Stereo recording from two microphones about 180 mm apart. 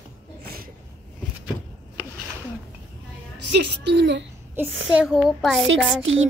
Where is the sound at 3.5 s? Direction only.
70° right (ahead or behind).